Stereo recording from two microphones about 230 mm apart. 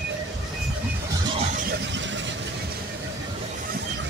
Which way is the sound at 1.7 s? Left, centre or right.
Right.